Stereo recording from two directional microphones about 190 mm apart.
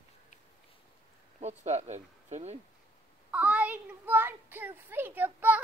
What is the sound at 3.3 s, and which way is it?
A child's voice, 5° right (ahead or behind).